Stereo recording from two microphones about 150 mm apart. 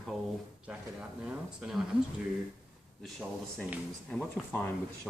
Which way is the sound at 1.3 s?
5° right (ahead or behind).